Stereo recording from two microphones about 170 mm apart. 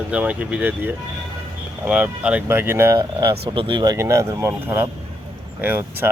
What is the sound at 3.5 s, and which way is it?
Speech, 30° right (ahead or behind).